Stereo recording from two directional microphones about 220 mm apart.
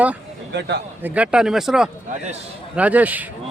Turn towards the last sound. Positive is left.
turn(degrees=-5)  # may be behind; listen again after turning